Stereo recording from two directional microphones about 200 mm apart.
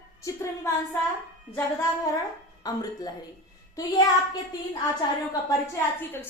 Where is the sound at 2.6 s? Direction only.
20° left (ahead or behind).